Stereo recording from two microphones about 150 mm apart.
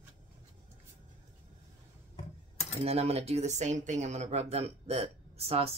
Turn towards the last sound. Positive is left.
turn(degrees=-40)  # may be behind; listen again after turning